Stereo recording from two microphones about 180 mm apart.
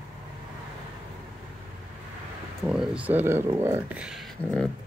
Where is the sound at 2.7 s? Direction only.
5° right (ahead or behind).